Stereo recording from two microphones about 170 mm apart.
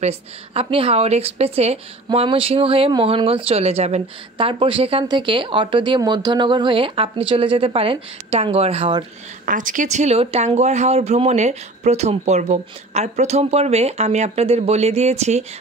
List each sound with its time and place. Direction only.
0.0 s speech: 35° right (ahead or behind)
9.5 s speech: 50° right (ahead or behind)